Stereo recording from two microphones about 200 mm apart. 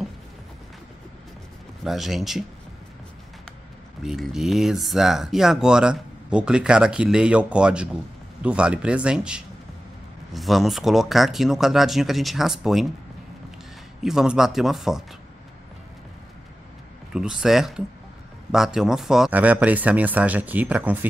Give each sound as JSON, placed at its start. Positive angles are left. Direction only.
{"t": 1.9, "sound": "speech", "side_deg": 0}
{"t": 4.0, "sound": "speech", "side_deg": 0}
{"t": 14.0, "sound": "speech", "side_deg": -5}
{"t": 17.1, "sound": "speech", "side_deg": -5}